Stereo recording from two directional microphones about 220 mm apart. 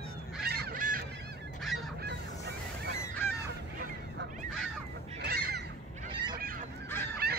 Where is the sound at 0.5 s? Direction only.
40° right (ahead or behind).